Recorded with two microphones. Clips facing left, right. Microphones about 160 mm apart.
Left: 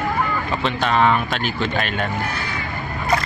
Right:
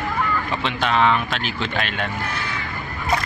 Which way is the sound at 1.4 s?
45° left (ahead or behind).